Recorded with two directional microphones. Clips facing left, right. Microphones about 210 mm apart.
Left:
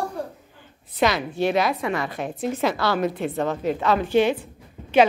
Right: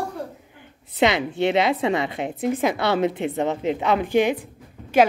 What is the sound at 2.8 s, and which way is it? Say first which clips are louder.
A woman's voice: right 2 dB; 20° right (ahead or behind).